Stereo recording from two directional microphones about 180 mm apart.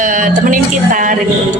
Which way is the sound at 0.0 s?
45° right (ahead or behind).